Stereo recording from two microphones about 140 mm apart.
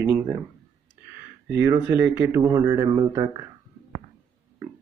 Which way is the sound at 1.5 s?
20° right (ahead or behind).